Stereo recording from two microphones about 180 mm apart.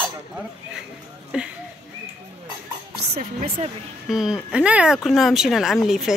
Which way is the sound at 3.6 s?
40° right (ahead or behind).